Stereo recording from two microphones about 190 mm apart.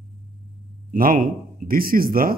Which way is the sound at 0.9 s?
45° right (ahead or behind).